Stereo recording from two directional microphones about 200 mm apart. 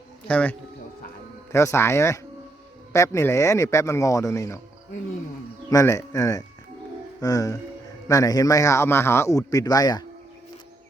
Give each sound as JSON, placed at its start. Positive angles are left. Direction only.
{"t": 0.3, "sound": "a man's voice", "side_deg": 5}
{"t": 1.5, "sound": "a man's voice", "side_deg": 15}
{"t": 5.7, "sound": "a man's voice", "side_deg": 15}